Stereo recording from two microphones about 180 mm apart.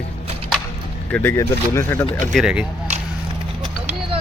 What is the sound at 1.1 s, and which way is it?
Speech, 10° left (ahead or behind).